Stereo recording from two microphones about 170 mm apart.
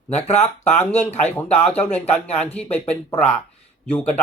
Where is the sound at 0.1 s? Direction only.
40° left (ahead or behind).